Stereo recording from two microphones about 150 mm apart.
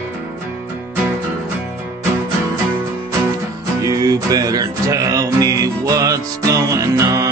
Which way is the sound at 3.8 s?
25° right (ahead or behind).